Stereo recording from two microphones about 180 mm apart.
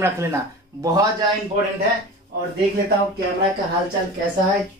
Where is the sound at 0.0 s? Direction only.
15° right (ahead or behind).